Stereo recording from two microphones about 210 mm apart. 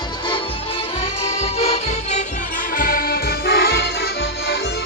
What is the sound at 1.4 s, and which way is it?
Music, 30° left (ahead or behind).